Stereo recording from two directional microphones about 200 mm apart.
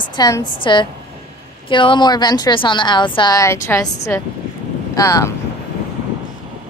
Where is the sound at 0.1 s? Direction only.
20° left (ahead or behind).